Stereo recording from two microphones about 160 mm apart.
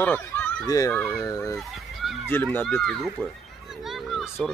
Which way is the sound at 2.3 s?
10° left (ahead or behind).